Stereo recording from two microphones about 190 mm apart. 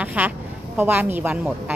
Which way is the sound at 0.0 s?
10° right (ahead or behind).